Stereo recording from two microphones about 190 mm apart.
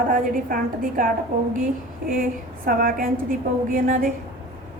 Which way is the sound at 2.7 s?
50° right (ahead or behind).